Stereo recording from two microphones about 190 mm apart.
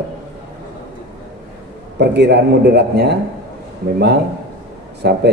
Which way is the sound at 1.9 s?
65° right (ahead or behind).